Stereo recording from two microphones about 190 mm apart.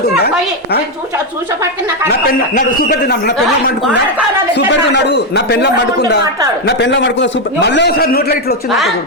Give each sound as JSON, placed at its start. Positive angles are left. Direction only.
{"t": 2.6, "sound": "a man's voice", "side_deg": 55}
{"t": 4.5, "sound": "a man's voice", "side_deg": 65}